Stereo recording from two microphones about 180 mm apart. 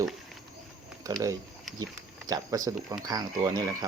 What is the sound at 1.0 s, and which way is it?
A man's voice, 20° right (ahead or behind).